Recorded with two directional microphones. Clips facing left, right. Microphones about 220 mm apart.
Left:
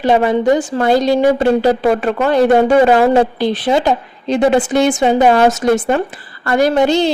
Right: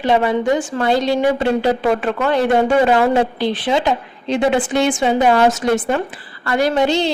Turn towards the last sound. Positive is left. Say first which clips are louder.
# left 4 dB
turn(degrees=45)  # may be behind; listen again after turning